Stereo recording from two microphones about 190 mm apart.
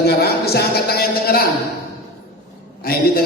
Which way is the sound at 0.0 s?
55° left (ahead or behind).